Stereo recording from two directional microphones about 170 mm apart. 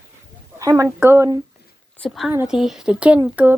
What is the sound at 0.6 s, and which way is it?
Speech, 20° right (ahead or behind).